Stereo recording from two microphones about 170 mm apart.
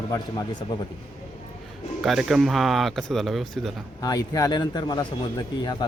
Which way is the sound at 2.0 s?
Centre (ahead or behind).